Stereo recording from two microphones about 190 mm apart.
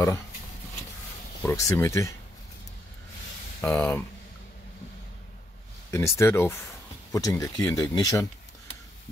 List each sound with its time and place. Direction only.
1.4 s speech: 15° left (ahead or behind)
3.6 s speech: 10° left (ahead or behind)
5.9 s speech: 15° left (ahead or behind)